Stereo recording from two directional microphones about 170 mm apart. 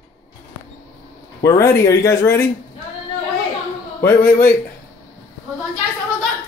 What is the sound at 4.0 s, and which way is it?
Speech, 10° left (ahead or behind).